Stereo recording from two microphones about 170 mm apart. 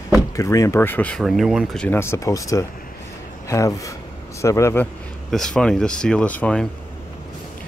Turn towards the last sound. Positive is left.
turn(degrees=10)  # may be behind; listen again after turning